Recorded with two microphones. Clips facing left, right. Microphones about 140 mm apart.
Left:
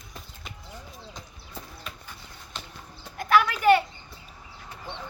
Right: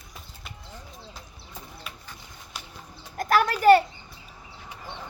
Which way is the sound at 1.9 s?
10° right (ahead or behind).